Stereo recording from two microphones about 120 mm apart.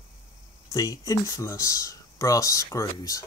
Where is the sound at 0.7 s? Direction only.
30° left (ahead or behind).